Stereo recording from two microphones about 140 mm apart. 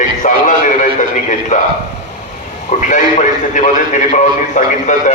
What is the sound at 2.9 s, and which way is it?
A man's voice, 65° left (ahead or behind).